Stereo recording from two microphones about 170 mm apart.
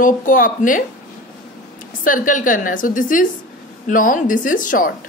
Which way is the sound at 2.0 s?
50° left (ahead or behind).